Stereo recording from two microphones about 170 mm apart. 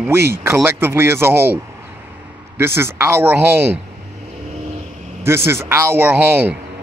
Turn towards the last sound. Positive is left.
turn(degrees=-10)  # may be behind; listen again after turning